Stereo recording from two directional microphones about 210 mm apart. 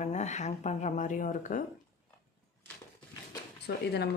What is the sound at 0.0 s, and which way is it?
Speech, 35° left (ahead or behind).